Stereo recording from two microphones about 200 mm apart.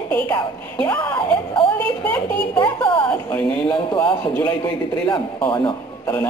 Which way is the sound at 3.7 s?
15° left (ahead or behind).